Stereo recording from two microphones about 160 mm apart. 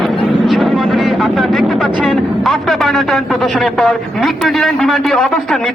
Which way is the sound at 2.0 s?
Centre (ahead or behind).